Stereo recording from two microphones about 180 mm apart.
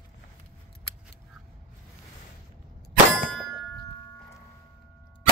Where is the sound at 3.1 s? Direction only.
5° left (ahead or behind).